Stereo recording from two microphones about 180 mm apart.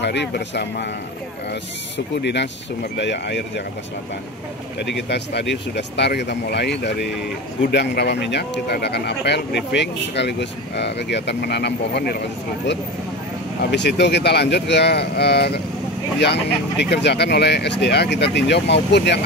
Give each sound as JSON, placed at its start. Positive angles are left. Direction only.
{"t": 0.0, "sound": "speech", "side_deg": 70}
{"t": 2.2, "sound": "speech", "side_deg": 70}
{"t": 4.7, "sound": "speech", "side_deg": 70}
{"t": 13.6, "sound": "speech", "side_deg": 70}